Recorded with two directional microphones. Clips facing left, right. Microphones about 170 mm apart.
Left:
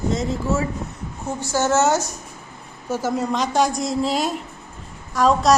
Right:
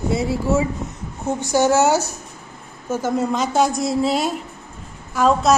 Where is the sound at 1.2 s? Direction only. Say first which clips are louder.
Right 4 dB; 20° right (ahead or behind).